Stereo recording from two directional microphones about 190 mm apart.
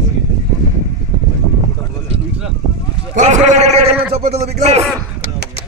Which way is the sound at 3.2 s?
40° right (ahead or behind).